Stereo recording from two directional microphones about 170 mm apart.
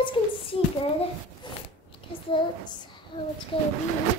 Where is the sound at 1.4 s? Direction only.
25° left (ahead or behind).